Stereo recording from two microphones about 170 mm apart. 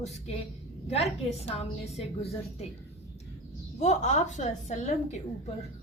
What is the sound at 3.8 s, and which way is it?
A woman's voice, 45° left (ahead or behind).